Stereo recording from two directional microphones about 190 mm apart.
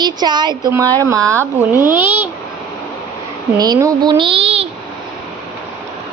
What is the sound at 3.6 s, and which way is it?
A woman's voice, 20° right (ahead or behind).